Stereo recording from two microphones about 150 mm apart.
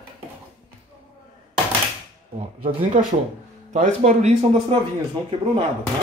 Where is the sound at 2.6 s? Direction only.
65° right (ahead or behind).